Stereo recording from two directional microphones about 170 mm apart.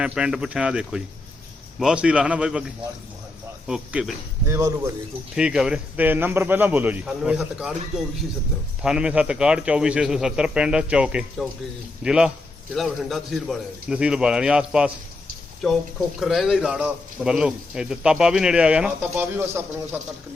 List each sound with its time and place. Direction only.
0.0 s a man's voice: 5° right (ahead or behind)
4.4 s a man's voice: 15° right (ahead or behind)
5.3 s a man's voice: 5° right (ahead or behind)